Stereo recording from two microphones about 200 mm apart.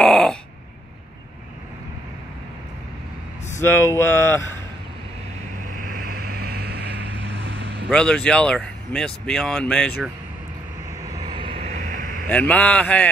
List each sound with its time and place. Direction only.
0.0 s a sound: 5° left (ahead or behind)
3.6 s speech: 10° left (ahead or behind)
5.7 s boat: 45° right (ahead or behind)
7.9 s speech: 5° left (ahead or behind)
11.1 s vehicle: 20° right (ahead or behind); by 12.3 s 40° right (ahead or behind)
12.3 s speech: 5° left (ahead or behind)